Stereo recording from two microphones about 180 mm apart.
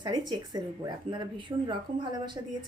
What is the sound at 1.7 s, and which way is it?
Speech, 25° right (ahead or behind).